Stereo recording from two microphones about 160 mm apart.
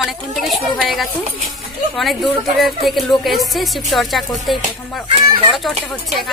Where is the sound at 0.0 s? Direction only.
Centre (ahead or behind).